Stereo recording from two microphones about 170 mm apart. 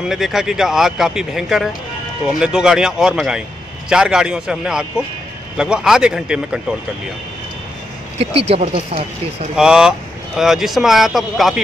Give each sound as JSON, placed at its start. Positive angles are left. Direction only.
{"t": 0.1, "sound": "speech", "side_deg": 0}
{"t": 8.2, "sound": "speech", "side_deg": -35}
{"t": 9.6, "sound": "speech", "side_deg": -5}